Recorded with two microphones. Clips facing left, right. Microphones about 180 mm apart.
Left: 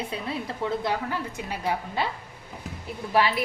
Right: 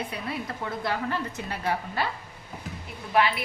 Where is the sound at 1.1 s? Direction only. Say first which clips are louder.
Even; 10° left (ahead or behind).